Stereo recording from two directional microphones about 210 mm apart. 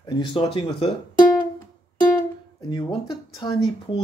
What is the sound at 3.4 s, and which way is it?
Speech, 20° left (ahead or behind).